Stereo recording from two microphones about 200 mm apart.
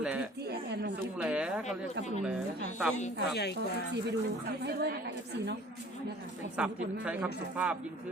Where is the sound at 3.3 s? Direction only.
55° left (ahead or behind).